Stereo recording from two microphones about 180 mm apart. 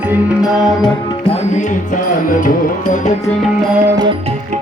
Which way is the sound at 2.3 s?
50° left (ahead or behind).